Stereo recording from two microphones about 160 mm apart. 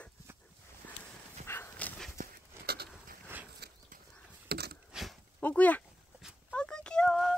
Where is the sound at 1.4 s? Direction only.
15° left (ahead or behind).